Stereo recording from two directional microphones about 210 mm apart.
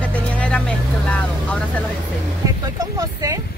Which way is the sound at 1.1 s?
5° left (ahead or behind).